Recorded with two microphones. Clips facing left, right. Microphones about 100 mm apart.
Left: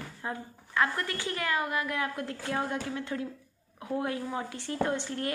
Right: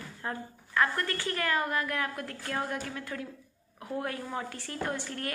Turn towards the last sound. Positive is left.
turn(degrees=25)  # may be behind; listen again after turning